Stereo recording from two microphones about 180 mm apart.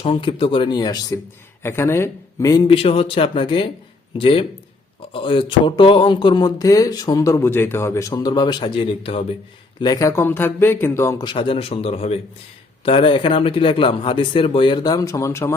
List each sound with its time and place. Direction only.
0.0 s speech: 30° left (ahead or behind)
9.8 s speech: 20° left (ahead or behind)